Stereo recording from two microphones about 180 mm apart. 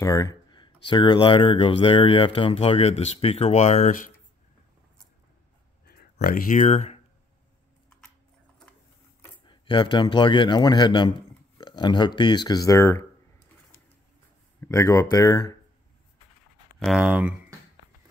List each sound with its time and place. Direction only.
0.0 s a sound: 20° left (ahead or behind)
0.8 s speech: 25° left (ahead or behind); by 4.1 s 45° left (ahead or behind)
5.9 s speech: 60° left (ahead or behind); by 7.0 s 40° left (ahead or behind)
9.5 s a man's voice: 25° left (ahead or behind)
14.6 s speech: 15° left (ahead or behind)
16.8 s speech: 5° right (ahead or behind)